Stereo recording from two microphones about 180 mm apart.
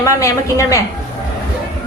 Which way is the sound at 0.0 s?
15° left (ahead or behind).